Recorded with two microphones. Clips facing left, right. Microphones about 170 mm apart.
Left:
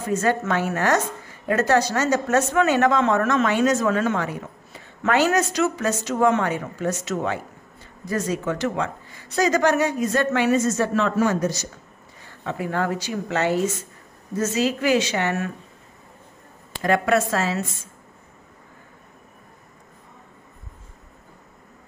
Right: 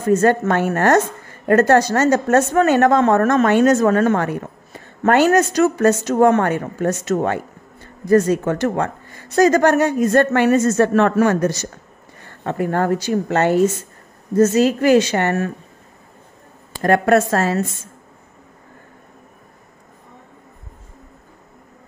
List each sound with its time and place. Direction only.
0.0 s a woman's voice: 50° right (ahead or behind)
16.7 s a woman's voice: 50° right (ahead or behind)